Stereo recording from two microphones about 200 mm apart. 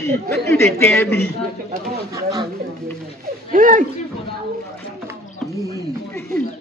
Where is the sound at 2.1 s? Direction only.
20° right (ahead or behind).